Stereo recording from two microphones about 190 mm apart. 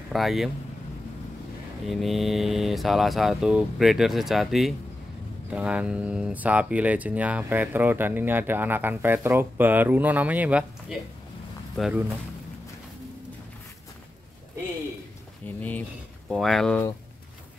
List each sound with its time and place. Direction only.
0.1 s speech: centre (ahead or behind)
1.9 s speech: centre (ahead or behind)
15.4 s speech: 10° left (ahead or behind)